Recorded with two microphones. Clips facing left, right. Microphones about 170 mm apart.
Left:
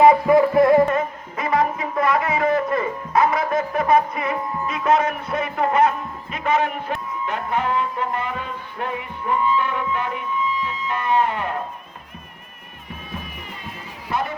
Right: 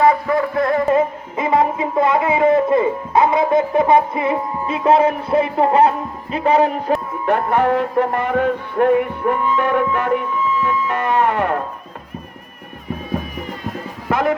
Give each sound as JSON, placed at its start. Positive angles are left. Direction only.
{"t": 0.0, "sound": "music", "side_deg": 20}
{"t": 0.9, "sound": "music", "side_deg": -25}
{"t": 6.3, "sound": "speech", "side_deg": -35}
{"t": 7.1, "sound": "music", "side_deg": -55}
{"t": 14.1, "sound": "speech", "side_deg": -90}